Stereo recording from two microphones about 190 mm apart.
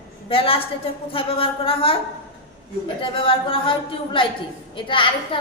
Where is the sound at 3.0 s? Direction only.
25° left (ahead or behind).